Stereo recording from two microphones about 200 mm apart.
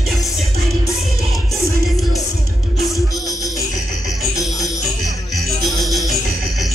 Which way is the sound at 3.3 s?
15° left (ahead or behind).